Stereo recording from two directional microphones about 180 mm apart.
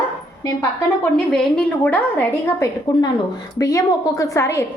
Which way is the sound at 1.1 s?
5° left (ahead or behind).